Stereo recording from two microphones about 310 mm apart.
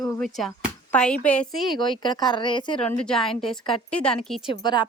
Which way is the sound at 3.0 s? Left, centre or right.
Centre.